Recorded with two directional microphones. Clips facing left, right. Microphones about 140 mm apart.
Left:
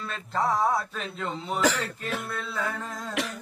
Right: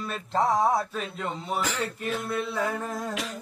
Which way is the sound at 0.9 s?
5° right (ahead or behind).